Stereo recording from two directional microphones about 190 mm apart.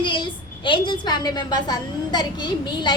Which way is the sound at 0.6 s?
25° left (ahead or behind).